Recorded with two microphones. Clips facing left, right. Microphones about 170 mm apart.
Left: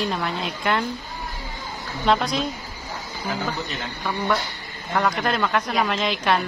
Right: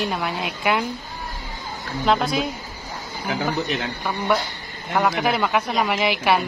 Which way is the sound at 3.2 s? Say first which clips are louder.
Right 4 dB; 70° right (ahead or behind).